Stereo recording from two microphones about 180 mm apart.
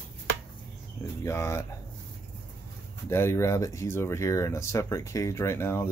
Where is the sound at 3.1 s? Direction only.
15° left (ahead or behind).